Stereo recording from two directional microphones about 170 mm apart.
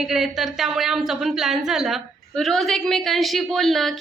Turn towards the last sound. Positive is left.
turn(degrees=0)  # may be behind; listen again after turning